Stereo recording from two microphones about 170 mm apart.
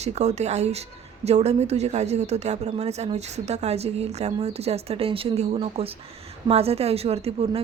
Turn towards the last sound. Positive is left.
turn(degrees=-35)  # may be behind; listen again after turning